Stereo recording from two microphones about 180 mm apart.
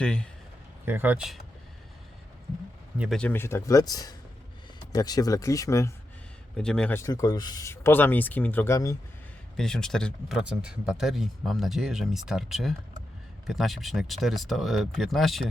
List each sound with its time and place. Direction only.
0.0 s speech: 5° left (ahead or behind)
0.9 s speech: 10° right (ahead or behind)
3.0 s speech: 5° left (ahead or behind)
6.6 s speech: 5° left (ahead or behind)
9.6 s speech: 5° left (ahead or behind)